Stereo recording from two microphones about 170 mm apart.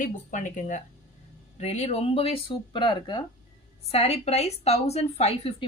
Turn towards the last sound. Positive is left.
turn(degrees=35)  # may be behind; listen again after turning